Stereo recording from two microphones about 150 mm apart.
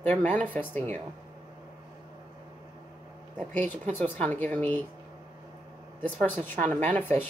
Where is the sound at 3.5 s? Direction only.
10° left (ahead or behind).